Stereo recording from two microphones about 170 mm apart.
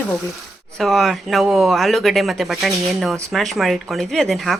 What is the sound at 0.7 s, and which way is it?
Speech, centre (ahead or behind).